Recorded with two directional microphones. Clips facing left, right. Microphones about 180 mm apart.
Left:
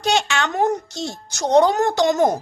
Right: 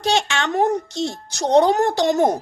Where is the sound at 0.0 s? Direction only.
25° right (ahead or behind).